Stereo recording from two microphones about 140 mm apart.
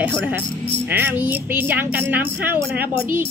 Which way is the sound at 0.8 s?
15° right (ahead or behind).